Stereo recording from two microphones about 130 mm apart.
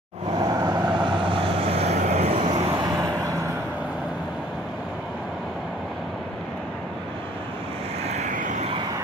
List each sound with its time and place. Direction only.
0.4 s vehicle: 30° right (ahead or behind); by 2.8 s 45° right (ahead or behind)
2.8 s vehicle: 30° right (ahead or behind)
8.1 s vehicle: 75° right (ahead or behind)